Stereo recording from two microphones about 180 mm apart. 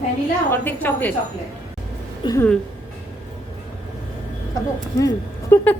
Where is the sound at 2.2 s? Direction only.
20° left (ahead or behind).